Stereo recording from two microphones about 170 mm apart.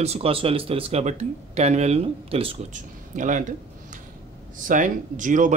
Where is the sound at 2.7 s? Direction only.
45° right (ahead or behind).